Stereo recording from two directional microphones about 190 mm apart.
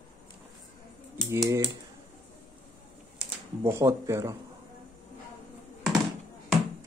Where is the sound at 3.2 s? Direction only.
15° right (ahead or behind).